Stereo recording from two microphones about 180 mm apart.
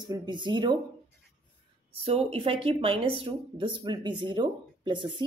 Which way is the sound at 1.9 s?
35° right (ahead or behind).